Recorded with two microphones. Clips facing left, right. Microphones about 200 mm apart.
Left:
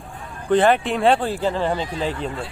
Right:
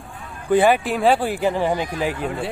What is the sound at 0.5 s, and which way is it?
Speech, 5° right (ahead or behind).